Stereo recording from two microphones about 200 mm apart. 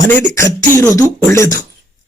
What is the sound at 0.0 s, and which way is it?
Speech, 10° left (ahead or behind).